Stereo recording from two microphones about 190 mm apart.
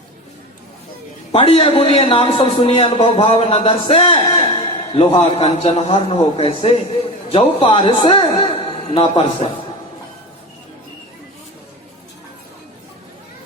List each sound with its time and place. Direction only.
1.3 s a man's voice: 30° left (ahead or behind)